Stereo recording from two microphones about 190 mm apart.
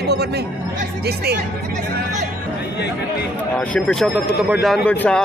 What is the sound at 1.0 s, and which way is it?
Speech, 60° right (ahead or behind).